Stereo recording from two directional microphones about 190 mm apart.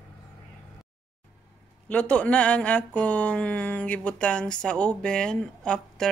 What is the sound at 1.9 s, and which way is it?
Speech, 5° left (ahead or behind).